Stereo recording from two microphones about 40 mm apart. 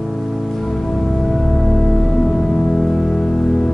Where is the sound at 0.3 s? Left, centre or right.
Centre.